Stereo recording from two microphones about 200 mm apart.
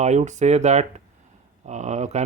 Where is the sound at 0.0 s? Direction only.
35° right (ahead or behind).